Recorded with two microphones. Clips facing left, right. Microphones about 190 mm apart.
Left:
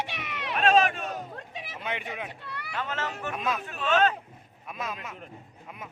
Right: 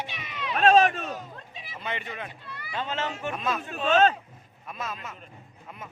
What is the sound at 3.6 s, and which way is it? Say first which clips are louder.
Speech: right 4 dB; 30° right (ahead or behind).